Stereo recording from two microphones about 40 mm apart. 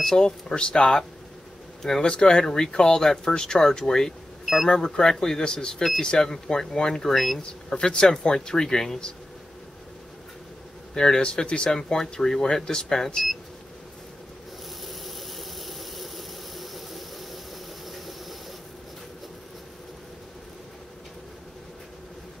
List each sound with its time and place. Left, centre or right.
0.0 s speech: centre
5.8 s speech: centre
7.7 s speech: left
11.0 s speech: centre
11.7 s speech: centre
14.9 s engine: centre
17.8 s squeal: centre